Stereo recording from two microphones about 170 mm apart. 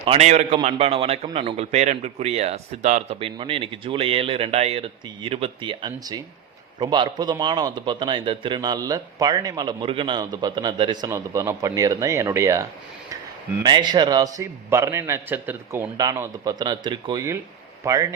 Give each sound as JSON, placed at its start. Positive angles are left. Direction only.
{"t": 0.0, "sound": "a man's voice", "side_deg": -35}